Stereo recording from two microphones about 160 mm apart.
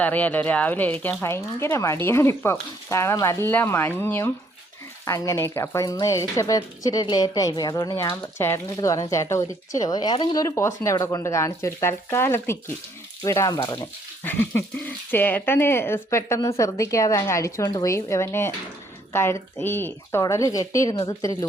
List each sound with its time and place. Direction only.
0.0 s speech: 10° left (ahead or behind)
14.3 s speech: 10° left (ahead or behind)
20.9 s speech: 30° left (ahead or behind)